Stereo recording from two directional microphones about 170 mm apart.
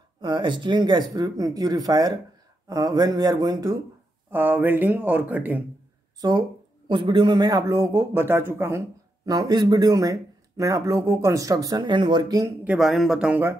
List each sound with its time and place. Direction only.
0.2 s a man's voice: 30° right (ahead or behind); by 5.6 s 10° right (ahead or behind)
6.2 s a man's voice: 20° right (ahead or behind)
12.6 s speech: centre (ahead or behind)